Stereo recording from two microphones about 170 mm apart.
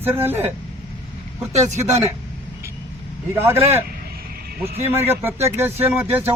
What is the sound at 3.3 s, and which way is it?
Speech, 15° right (ahead or behind).